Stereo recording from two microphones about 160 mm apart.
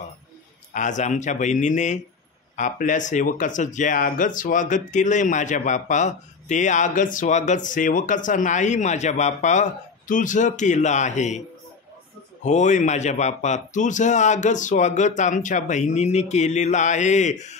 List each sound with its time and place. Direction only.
0.7 s speech: 50° left (ahead or behind)
12.4 s speech: 50° left (ahead or behind)